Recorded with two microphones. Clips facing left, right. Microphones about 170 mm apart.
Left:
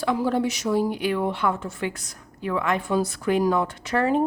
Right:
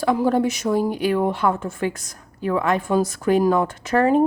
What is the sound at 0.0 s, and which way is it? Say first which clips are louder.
A woman's voice: right 4 dB; 45° right (ahead or behind).